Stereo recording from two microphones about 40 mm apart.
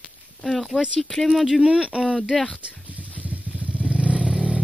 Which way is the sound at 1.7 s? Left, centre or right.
Right.